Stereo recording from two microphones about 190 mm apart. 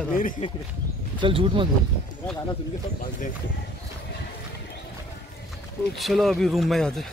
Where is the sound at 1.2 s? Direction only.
25° right (ahead or behind).